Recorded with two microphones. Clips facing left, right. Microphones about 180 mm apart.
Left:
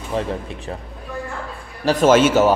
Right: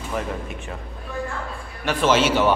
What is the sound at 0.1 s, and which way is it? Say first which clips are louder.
Speech: left 4 dB; 30° left (ahead or behind).